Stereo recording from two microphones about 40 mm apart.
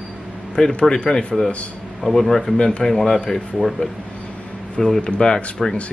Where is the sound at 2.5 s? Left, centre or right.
Left.